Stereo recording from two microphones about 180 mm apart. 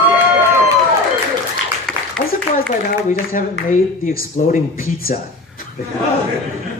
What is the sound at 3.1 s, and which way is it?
A woman's voice, 45° left (ahead or behind).